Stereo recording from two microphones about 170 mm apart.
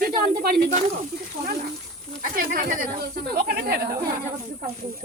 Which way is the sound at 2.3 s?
55° right (ahead or behind).